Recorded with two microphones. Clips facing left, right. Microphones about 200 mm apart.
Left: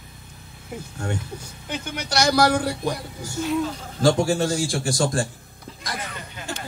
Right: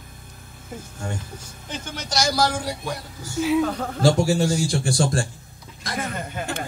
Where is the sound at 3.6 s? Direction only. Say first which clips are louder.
Right 4 dB; 60° right (ahead or behind).